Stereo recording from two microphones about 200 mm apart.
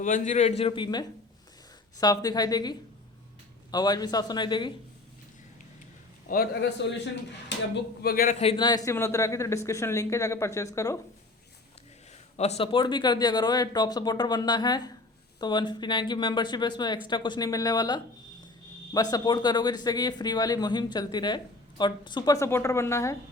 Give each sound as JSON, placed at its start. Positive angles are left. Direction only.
{"t": 0.0, "sound": "a man's voice", "side_deg": 40}
{"t": 6.2, "sound": "a man's voice", "side_deg": 45}
{"t": 8.0, "sound": "a man's voice", "side_deg": 45}
{"t": 8.4, "sound": "speech", "side_deg": 25}
{"t": 12.4, "sound": "speech", "side_deg": 30}
{"t": 19.1, "sound": "speech", "side_deg": 20}